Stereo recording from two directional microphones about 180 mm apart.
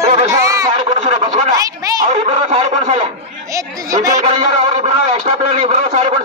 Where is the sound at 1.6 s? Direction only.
20° right (ahead or behind).